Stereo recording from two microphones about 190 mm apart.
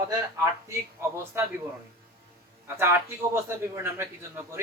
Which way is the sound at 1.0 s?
15° right (ahead or behind).